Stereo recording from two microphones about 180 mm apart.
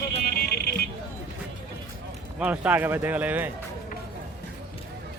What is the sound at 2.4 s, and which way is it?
Speech, 10° right (ahead or behind).